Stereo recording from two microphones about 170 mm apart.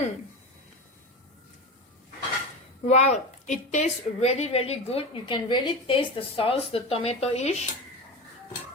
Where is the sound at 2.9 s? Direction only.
40° left (ahead or behind).